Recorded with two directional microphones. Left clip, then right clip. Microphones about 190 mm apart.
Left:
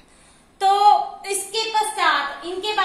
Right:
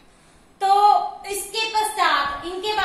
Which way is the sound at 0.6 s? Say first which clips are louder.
Left 1 dB; 45° left (ahead or behind).